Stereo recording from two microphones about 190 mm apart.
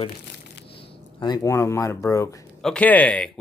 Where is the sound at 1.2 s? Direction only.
20° left (ahead or behind).